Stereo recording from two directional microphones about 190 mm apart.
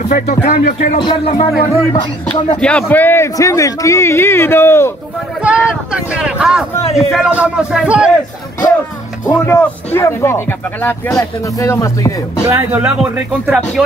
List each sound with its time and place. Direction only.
0.1 s speech: 40° left (ahead or behind)
0.9 s a man's voice: 25° left (ahead or behind)
2.6 s a man's voice: 5° left (ahead or behind)
5.4 s speech: 5° right (ahead or behind)
9.2 s a man's voice: 15° left (ahead or behind)
12.4 s speech: 15° right (ahead or behind)
12.8 s speech: centre (ahead or behind)